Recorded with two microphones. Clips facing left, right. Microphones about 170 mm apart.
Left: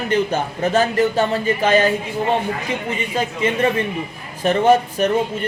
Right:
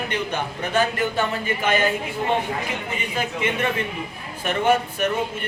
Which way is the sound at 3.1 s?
40° left (ahead or behind).